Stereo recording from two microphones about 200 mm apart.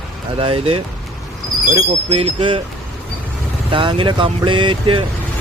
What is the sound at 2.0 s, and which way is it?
Speech, 30° right (ahead or behind).